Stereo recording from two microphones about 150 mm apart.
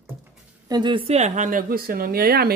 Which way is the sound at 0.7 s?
30° right (ahead or behind).